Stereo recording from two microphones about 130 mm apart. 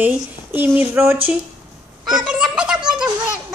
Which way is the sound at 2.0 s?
5° right (ahead or behind).